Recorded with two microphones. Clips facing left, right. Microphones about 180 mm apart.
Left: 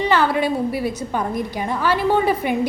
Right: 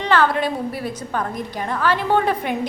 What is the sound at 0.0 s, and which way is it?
A woman's voice, 10° left (ahead or behind).